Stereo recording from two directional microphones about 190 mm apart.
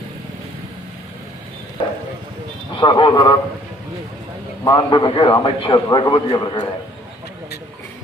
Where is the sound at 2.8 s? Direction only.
25° left (ahead or behind).